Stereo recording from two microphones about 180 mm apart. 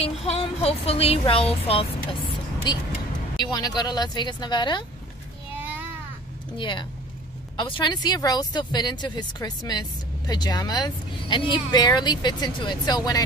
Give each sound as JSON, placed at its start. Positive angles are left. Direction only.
{"t": 0.0, "sound": "speech", "side_deg": 35}
{"t": 6.6, "sound": "speech", "side_deg": 25}